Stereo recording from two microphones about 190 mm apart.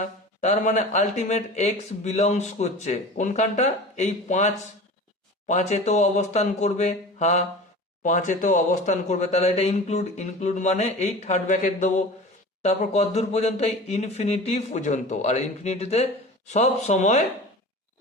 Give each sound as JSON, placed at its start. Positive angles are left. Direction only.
{"t": 0.0, "sound": "speech", "side_deg": 40}